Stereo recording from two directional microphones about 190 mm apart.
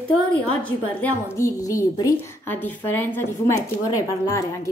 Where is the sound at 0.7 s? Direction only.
10° left (ahead or behind).